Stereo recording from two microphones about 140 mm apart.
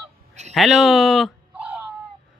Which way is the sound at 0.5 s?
Centre (ahead or behind).